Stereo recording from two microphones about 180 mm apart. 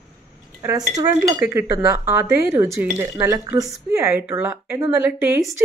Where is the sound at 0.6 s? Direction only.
15° right (ahead or behind).